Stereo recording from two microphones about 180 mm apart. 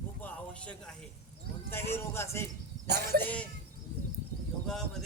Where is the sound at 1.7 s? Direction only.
15° left (ahead or behind).